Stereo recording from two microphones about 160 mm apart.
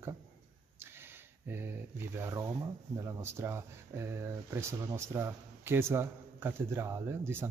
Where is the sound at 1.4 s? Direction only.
15° right (ahead or behind).